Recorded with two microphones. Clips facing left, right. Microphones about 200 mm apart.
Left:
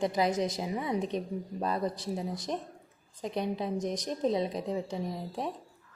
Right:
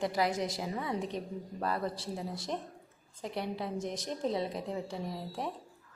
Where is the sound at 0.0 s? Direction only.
20° left (ahead or behind).